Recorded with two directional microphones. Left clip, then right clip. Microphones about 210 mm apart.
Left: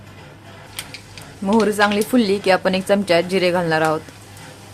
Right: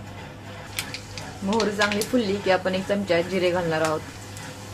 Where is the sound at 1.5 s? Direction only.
50° left (ahead or behind).